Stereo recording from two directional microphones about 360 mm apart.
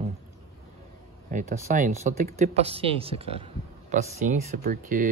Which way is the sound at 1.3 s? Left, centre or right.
Right.